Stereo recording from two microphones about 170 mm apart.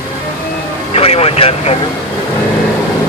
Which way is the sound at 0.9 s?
35° left (ahead or behind).